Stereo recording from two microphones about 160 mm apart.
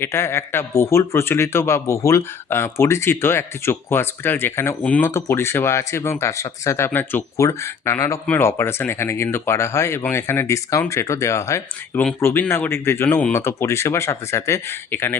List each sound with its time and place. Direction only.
0.0 s speech: 15° left (ahead or behind)